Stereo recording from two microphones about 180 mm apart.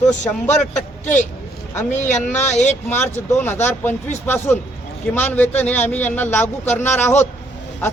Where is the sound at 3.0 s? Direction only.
10° left (ahead or behind).